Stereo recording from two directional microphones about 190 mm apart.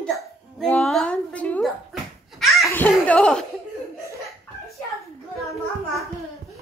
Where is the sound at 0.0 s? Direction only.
5° left (ahead or behind).